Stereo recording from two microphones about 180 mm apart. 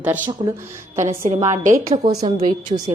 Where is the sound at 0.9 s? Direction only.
40° right (ahead or behind).